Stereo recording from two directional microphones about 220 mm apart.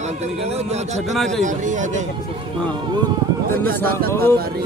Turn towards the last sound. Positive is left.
turn(degrees=10)  # may be behind; listen again after turning